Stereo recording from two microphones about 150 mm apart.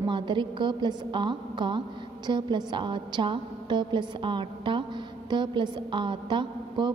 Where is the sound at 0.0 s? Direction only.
30° right (ahead or behind).